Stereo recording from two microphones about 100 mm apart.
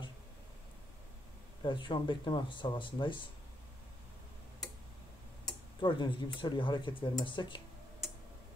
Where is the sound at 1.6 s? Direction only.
55° left (ahead or behind).